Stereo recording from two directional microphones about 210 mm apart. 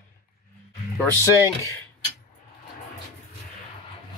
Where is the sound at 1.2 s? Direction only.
15° left (ahead or behind).